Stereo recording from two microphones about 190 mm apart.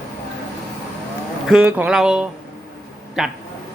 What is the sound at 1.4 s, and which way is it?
Speech, 5° right (ahead or behind).